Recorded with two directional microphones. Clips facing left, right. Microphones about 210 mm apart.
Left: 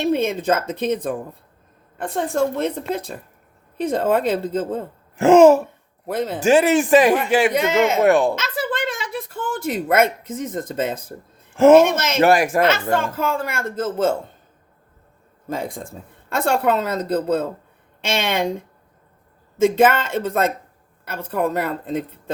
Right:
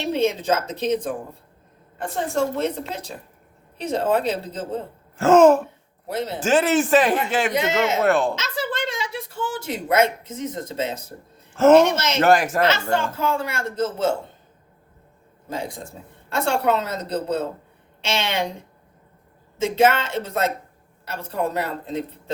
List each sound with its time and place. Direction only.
0.0 s a woman's voice: 55° left (ahead or behind)
5.1 s speech: 15° left (ahead or behind)
6.1 s speech: 50° left (ahead or behind)
6.4 s speech: 10° left (ahead or behind)
7.5 s speech: 50° left (ahead or behind)
8.0 s speech: 15° left (ahead or behind)
8.4 s a sound: 55° left (ahead or behind)
11.5 s speech: 10° left (ahead or behind)
11.9 s speech: 50° left (ahead or behind)
12.2 s speech: 10° left (ahead or behind)
12.6 s speech: 50° left (ahead or behind)
15.4 s speech: 50° left (ahead or behind)
19.5 s speech: 50° left (ahead or behind)